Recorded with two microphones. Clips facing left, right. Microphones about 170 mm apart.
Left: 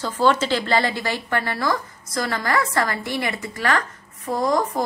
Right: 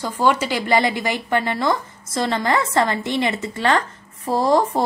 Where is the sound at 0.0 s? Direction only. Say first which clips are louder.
Even; 10° right (ahead or behind).